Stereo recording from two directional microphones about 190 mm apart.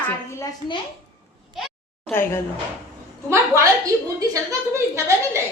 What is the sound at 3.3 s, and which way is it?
Speech, 15° right (ahead or behind).